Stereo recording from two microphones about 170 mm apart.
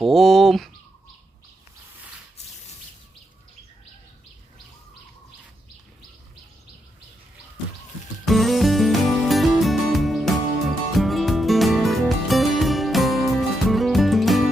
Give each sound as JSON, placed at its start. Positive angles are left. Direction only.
{"t": 0.0, "sound": "speech", "side_deg": 0}
{"t": 8.2, "sound": "music", "side_deg": 0}